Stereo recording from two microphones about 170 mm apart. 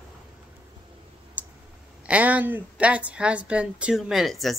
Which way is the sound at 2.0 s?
10° right (ahead or behind).